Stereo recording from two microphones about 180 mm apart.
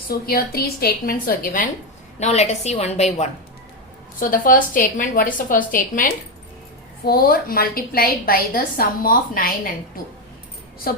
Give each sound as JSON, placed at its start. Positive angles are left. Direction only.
{"t": 0.1, "sound": "a woman's voice", "side_deg": 55}
{"t": 2.1, "sound": "a woman's voice", "side_deg": 40}
{"t": 4.2, "sound": "a woman's voice", "side_deg": 50}